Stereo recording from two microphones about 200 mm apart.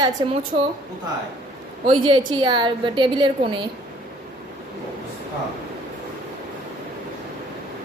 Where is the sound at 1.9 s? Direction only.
25° right (ahead or behind).